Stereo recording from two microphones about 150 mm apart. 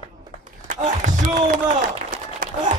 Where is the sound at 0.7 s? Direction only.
55° right (ahead or behind).